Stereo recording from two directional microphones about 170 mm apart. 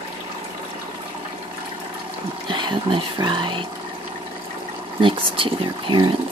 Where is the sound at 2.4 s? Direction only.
25° right (ahead or behind).